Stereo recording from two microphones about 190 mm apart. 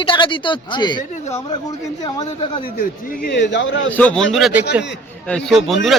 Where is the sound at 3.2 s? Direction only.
65° left (ahead or behind); by 3.9 s 80° left.